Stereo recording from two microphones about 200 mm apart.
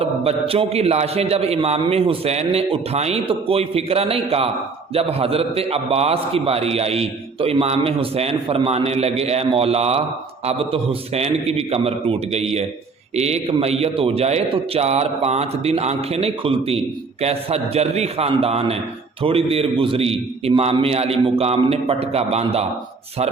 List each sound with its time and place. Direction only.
0.0 s a man's voice: 30° right (ahead or behind)